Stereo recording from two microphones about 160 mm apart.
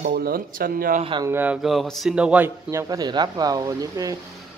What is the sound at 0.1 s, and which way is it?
Speech, 70° right (ahead or behind).